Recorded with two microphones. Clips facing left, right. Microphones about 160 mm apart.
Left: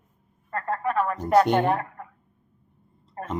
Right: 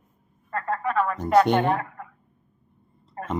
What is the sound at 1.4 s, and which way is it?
Speech, 10° left (ahead or behind).